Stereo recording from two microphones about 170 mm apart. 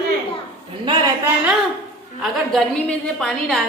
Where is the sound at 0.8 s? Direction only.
25° right (ahead or behind).